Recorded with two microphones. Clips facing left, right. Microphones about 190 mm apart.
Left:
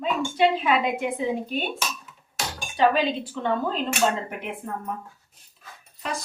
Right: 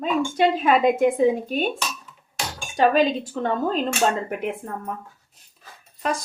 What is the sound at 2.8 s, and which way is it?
A woman's voice, 45° right (ahead or behind).